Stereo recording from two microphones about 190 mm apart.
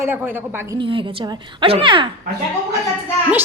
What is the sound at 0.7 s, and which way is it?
A woman's voice, 25° right (ahead or behind).